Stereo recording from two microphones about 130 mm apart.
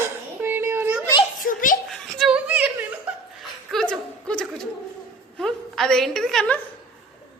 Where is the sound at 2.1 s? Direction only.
5° right (ahead or behind).